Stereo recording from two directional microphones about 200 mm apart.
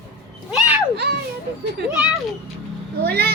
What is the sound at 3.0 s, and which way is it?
Speech, 50° right (ahead or behind).